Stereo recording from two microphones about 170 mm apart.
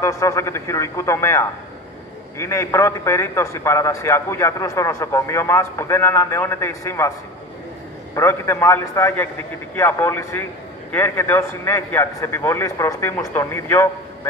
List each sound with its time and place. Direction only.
0.0 s a man's voice: 15° left (ahead or behind)
8.1 s a man's voice: 15° left (ahead or behind)